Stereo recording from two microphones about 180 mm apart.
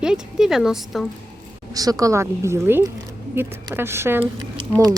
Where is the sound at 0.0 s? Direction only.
5° right (ahead or behind).